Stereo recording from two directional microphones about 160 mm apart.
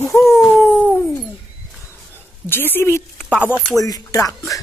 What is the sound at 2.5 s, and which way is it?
Speech, 15° left (ahead or behind).